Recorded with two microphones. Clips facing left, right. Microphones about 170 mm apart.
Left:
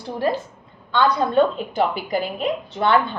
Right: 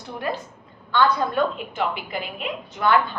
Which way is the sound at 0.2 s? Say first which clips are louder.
Left 6 dB; 30° left (ahead or behind).